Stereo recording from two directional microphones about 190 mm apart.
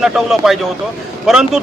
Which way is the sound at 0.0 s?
Centre (ahead or behind).